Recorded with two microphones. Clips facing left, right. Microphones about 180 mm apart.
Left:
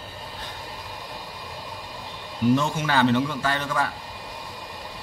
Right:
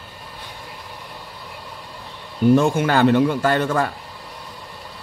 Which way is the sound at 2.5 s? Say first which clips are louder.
Right 7 dB; 50° right (ahead or behind).